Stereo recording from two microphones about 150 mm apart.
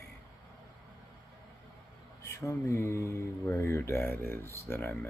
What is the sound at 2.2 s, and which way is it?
Speech, 20° left (ahead or behind).